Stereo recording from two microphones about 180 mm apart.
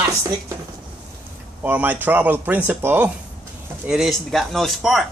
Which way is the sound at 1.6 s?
10° right (ahead or behind).